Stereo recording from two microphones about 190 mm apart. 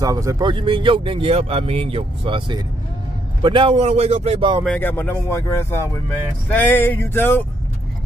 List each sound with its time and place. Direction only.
0.0 s speech: 15° right (ahead or behind); by 4.5 s 35° right (ahead or behind)
4.6 s speech: 10° left (ahead or behind)